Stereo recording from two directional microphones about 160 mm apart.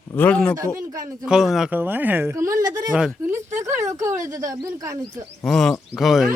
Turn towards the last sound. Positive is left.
turn(degrees=0)  # may be behind; listen again after turning